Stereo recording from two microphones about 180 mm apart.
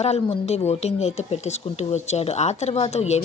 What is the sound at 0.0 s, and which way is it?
A woman's voice, 35° left (ahead or behind).